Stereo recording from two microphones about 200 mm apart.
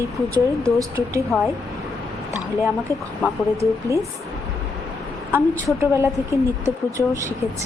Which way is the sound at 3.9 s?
15° right (ahead or behind).